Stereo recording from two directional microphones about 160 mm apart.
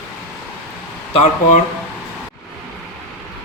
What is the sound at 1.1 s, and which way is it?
Speech, 50° left (ahead or behind).